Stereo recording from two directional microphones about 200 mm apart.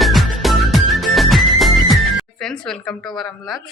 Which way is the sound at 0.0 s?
Centre (ahead or behind).